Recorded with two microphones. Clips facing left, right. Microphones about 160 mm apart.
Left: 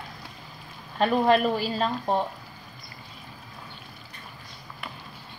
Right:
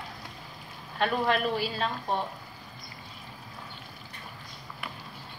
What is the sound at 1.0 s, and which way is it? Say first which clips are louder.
Speech: left 6 dB; 40° left (ahead or behind).